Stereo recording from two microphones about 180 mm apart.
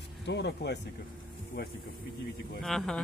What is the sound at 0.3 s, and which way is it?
Speech, 70° left (ahead or behind).